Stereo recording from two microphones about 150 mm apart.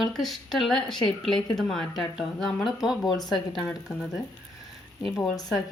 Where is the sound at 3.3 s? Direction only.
30° left (ahead or behind).